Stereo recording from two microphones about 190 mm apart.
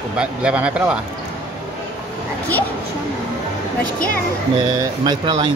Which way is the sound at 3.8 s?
50° left (ahead or behind).